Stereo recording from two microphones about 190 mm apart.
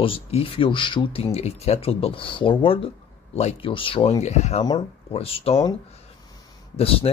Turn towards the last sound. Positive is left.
turn(degrees=30)  # may be behind; listen again after turning